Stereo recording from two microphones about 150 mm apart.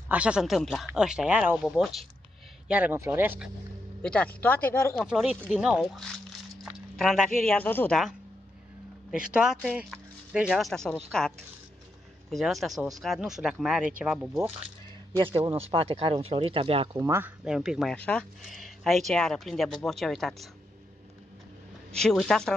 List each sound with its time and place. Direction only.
0.1 s speech: 5° right (ahead or behind)
2.7 s a man's voice: 10° right (ahead or behind)
4.0 s speech: 10° left (ahead or behind)
5.0 s speech: 5° right (ahead or behind)
6.6 s a sound: centre (ahead or behind)
7.4 s speech: 10° left (ahead or behind)
9.1 s speech: 5° right (ahead or behind)
15.1 s a man's voice: 25° right (ahead or behind)
15.5 s speech: 40° right (ahead or behind)
17.0 s a man's voice: 15° right (ahead or behind)
17.5 s speech: 5° right (ahead or behind)
17.9 s speech: 10° left (ahead or behind)
21.9 s speech: 5° left (ahead or behind)